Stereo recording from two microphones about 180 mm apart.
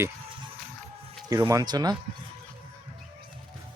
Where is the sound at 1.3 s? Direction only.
20° right (ahead or behind).